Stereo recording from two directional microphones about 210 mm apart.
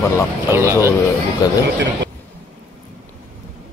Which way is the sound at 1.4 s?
15° left (ahead or behind).